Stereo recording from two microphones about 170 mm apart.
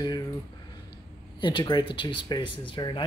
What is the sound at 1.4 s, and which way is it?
Speech, 25° left (ahead or behind).